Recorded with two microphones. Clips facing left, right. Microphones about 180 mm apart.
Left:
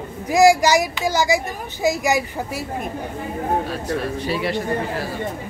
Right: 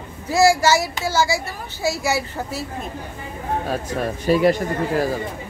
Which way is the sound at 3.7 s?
45° right (ahead or behind).